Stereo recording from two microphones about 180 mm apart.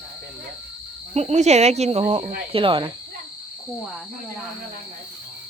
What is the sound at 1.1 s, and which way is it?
Speech, 40° right (ahead or behind).